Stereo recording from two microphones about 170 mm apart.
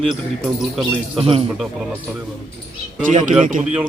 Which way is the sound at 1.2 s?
35° right (ahead or behind).